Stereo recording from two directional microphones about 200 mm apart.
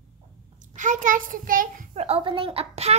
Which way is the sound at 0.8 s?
40° right (ahead or behind).